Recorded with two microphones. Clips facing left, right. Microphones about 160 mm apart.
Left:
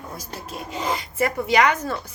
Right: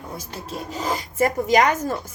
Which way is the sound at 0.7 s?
40° right (ahead or behind).